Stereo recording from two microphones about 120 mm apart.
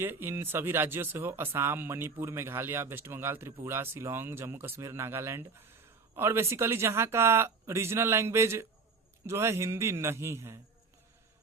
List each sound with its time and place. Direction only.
0.0 s speech: 20° right (ahead or behind)